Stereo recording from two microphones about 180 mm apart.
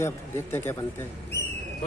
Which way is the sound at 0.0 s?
10° left (ahead or behind).